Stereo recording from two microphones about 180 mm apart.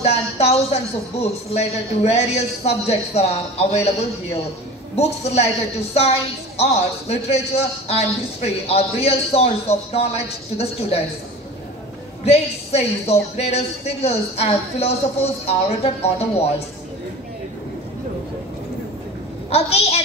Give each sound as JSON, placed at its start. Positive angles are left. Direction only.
{"t": 0.0, "sound": "a sound", "side_deg": 35}
{"t": 1.2, "sound": "a woman's voice", "side_deg": 35}
{"t": 12.3, "sound": "a woman's voice", "side_deg": 35}
{"t": 19.5, "sound": "a woman's voice", "side_deg": 35}